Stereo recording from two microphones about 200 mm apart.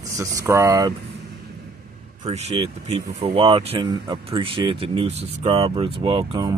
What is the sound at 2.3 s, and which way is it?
Speech, 30° right (ahead or behind).